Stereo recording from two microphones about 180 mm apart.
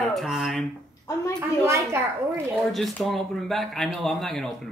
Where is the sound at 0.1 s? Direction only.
Centre (ahead or behind).